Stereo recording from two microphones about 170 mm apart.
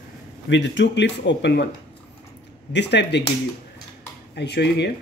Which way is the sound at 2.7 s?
90° left.